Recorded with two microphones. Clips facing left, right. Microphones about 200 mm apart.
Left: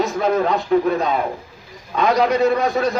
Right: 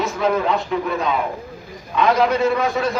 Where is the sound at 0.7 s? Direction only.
40° left (ahead or behind).